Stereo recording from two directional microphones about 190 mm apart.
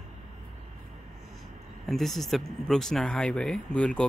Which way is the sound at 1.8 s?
Centre (ahead or behind).